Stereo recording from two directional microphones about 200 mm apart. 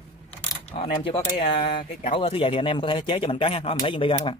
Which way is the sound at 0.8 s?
30° left (ahead or behind).